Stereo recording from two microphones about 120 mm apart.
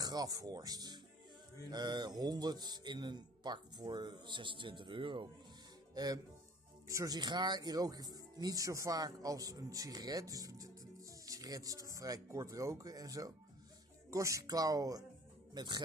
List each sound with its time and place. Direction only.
0.0 s speech: 30° right (ahead or behind)
6.0 s speech: 35° right (ahead or behind)